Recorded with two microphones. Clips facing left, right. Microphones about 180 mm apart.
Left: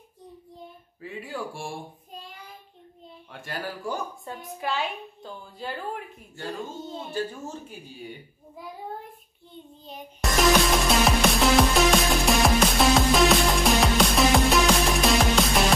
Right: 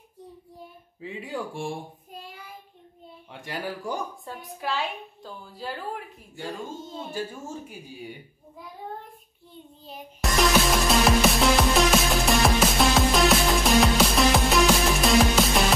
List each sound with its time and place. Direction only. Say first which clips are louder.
1.0 s speech: right 1 dB; 20° right (ahead or behind)
2.1 s child singing: right 1 dB; 10° right (ahead or behind)
3.3 s speech: right 1 dB; 15° right (ahead or behind)
4.3 s a woman's voice: left 2 dB; centre (ahead or behind)
7.1 s speech: left 2 dB; 10° right (ahead or behind)
9.8 s music: even; centre (ahead or behind)